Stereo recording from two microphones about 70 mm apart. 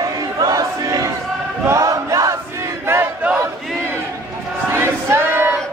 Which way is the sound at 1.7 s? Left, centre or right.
Right.